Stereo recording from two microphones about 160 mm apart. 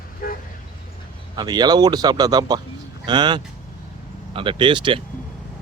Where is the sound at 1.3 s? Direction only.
25° right (ahead or behind).